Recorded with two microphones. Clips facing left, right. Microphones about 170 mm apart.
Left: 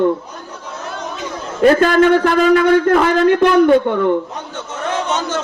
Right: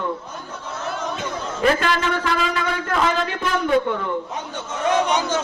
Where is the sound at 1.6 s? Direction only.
45° left (ahead or behind).